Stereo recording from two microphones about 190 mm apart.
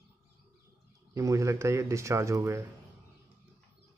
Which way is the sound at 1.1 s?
15° right (ahead or behind).